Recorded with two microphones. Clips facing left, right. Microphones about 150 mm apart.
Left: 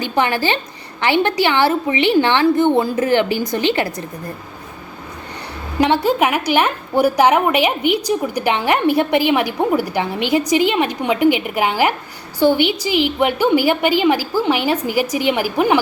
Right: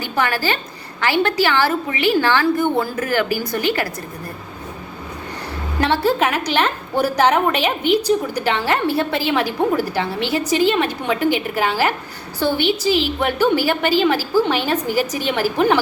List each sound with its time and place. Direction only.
0.0 s a woman's voice: 20° left (ahead or behind)
5.8 s a woman's voice: 15° left (ahead or behind)